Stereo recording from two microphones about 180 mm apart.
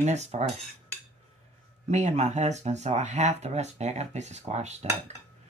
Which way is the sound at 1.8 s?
40° right (ahead or behind).